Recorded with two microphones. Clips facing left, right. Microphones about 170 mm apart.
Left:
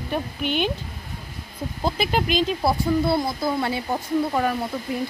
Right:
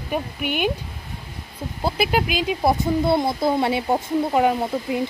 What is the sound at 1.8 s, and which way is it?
Speech, 10° right (ahead or behind).